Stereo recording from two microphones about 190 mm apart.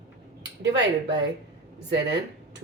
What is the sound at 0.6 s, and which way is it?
Speech, 65° right (ahead or behind).